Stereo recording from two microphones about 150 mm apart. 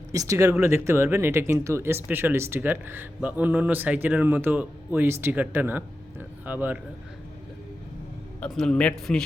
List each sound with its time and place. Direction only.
0.1 s speech: 20° right (ahead or behind)
8.4 s a man's voice: 5° left (ahead or behind)